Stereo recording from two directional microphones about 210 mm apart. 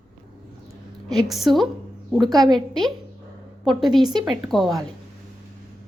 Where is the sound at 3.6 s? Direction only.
Centre (ahead or behind).